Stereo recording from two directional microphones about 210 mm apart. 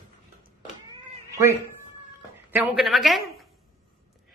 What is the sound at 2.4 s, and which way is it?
A man's voice, 10° right (ahead or behind).